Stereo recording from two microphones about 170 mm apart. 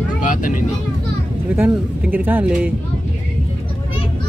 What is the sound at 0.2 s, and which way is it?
Speech, 50° left (ahead or behind).